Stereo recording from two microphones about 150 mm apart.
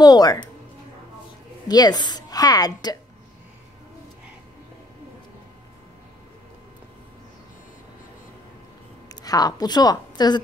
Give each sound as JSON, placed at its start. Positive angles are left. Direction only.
{"t": 0.0, "sound": "speech", "side_deg": 25}
{"t": 1.7, "sound": "a woman's voice", "side_deg": 25}
{"t": 9.1, "sound": "a woman's voice", "side_deg": 25}